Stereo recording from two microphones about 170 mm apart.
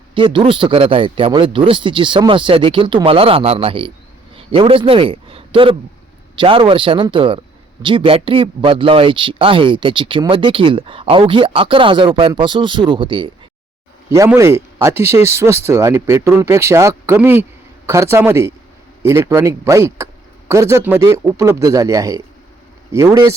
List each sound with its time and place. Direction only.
0.1 s a man's voice: 30° right (ahead or behind)
14.3 s speech: 15° right (ahead or behind)